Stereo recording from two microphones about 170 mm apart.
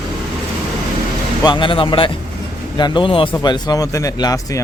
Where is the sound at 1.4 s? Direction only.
30° left (ahead or behind).